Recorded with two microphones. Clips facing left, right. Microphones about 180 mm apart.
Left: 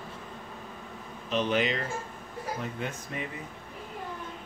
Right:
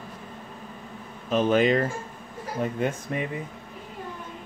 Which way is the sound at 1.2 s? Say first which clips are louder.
Right 6 dB; 45° right (ahead or behind).